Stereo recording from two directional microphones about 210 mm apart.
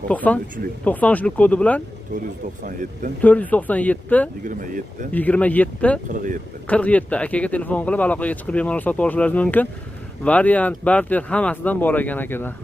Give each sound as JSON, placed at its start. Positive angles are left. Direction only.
{"t": 0.1, "sound": "speech", "side_deg": 5}
{"t": 3.2, "sound": "speech", "side_deg": 5}
{"t": 4.5, "sound": "speech", "side_deg": -40}
{"t": 5.1, "sound": "speech", "side_deg": 5}
{"t": 6.0, "sound": "speech", "side_deg": -40}
{"t": 6.7, "sound": "speech", "side_deg": 5}